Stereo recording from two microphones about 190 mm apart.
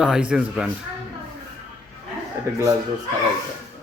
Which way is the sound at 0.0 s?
5° right (ahead or behind).